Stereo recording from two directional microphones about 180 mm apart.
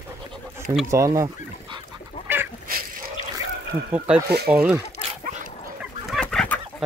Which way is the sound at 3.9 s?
5° right (ahead or behind).